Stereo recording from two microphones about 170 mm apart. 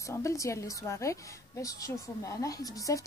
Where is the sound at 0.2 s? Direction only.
20° left (ahead or behind).